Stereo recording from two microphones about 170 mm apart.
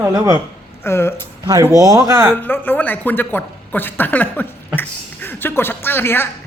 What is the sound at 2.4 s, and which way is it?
Speech, 10° left (ahead or behind).